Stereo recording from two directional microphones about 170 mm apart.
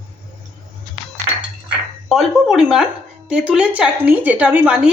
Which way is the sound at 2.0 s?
Centre (ahead or behind).